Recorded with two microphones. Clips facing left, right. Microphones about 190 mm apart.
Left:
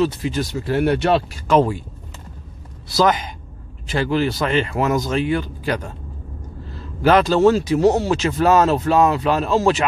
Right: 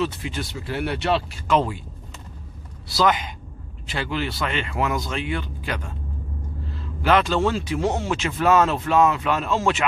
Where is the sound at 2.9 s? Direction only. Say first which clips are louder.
Left 3 dB; 40° left (ahead or behind).